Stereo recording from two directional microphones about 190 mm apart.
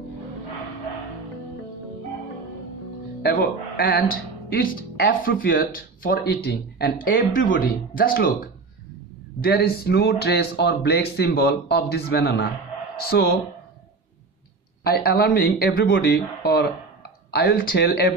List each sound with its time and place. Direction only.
3.2 s speech: 55° left (ahead or behind)
7.1 s speech: 45° left (ahead or behind)
14.8 s speech: 55° left (ahead or behind)